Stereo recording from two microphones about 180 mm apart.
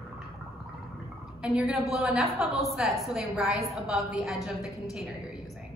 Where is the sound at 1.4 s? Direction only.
5° right (ahead or behind).